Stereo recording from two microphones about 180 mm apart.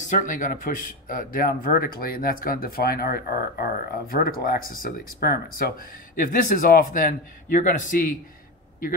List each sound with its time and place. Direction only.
0.0 s speech: 45° left (ahead or behind)